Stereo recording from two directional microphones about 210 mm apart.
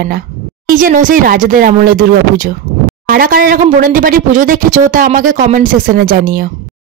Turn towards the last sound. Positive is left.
turn(degrees=-45)  # may be behind; listen again after turning